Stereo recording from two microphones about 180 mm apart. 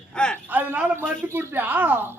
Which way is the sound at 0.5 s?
10° right (ahead or behind).